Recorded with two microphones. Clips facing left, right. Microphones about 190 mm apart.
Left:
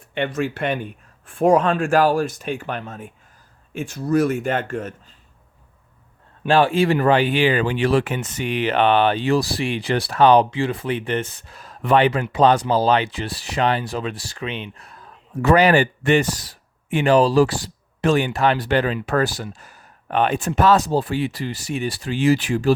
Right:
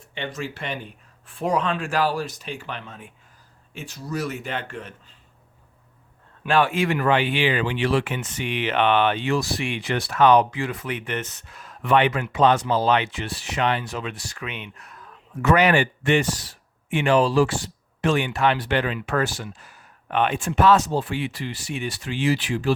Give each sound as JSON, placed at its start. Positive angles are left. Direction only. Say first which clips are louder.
{"t": 0.1, "sound": "speech", "louder": "left 8 dB", "side_deg": 60}
{"t": 6.4, "sound": "speech", "louder": "left 4 dB", "side_deg": 30}